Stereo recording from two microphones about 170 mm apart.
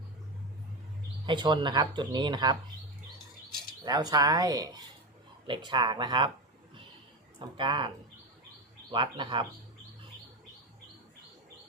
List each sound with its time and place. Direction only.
1.3 s speech: 25° right (ahead or behind)
3.8 s speech: 25° right (ahead or behind)
7.3 s speech: 30° right (ahead or behind)